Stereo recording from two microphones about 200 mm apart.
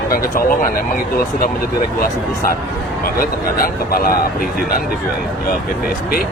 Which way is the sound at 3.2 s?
45° left (ahead or behind).